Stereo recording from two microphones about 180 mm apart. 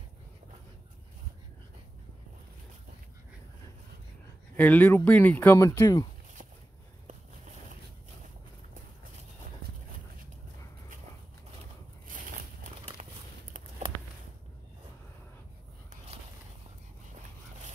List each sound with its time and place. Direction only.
4.6 s speech: 10° left (ahead or behind)